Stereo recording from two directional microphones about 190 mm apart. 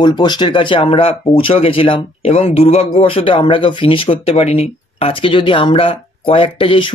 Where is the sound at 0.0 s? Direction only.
20° left (ahead or behind).